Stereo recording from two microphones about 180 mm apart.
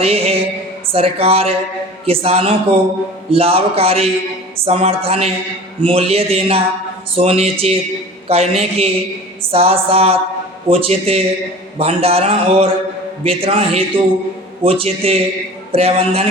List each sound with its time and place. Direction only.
0.0 s speech: 35° right (ahead or behind)